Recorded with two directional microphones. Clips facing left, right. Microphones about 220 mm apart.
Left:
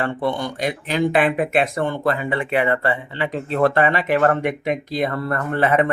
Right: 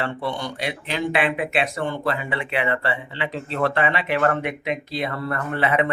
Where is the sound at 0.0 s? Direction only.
50° left (ahead or behind).